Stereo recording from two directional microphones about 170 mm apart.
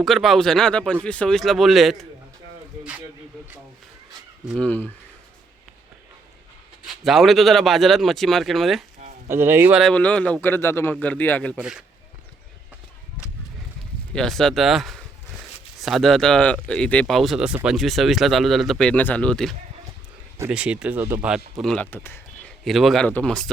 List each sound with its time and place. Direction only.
0.0 s speech: centre (ahead or behind)
4.4 s a man's voice: 5° left (ahead or behind)
6.8 s speech: centre (ahead or behind)
9.0 s a sound: 45° right (ahead or behind)
9.3 s speech: 15° right (ahead or behind)
9.8 s a man's voice: 5° left (ahead or behind)
11.6 s speech: 5° right (ahead or behind)
14.1 s speech: 5° left (ahead or behind)
21.6 s speech: 5° left (ahead or behind)
22.6 s speech: centre (ahead or behind)